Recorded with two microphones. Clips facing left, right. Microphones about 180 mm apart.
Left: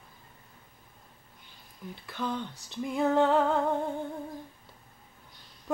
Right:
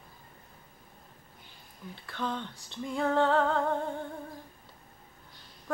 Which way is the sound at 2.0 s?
10° left (ahead or behind).